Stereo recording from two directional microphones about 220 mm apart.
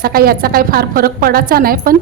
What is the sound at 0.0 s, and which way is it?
A woman's voice, 40° right (ahead or behind).